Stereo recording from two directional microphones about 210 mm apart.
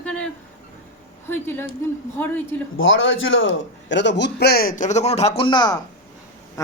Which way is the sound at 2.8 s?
65° left (ahead or behind).